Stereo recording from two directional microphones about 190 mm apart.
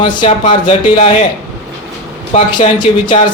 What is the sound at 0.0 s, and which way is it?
Speech, 25° left (ahead or behind).